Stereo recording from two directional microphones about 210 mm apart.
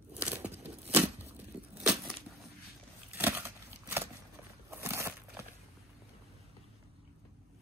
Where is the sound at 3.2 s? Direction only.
10° right (ahead or behind).